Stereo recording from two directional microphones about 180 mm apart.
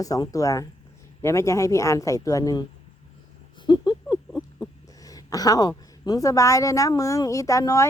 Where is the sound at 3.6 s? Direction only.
25° left (ahead or behind).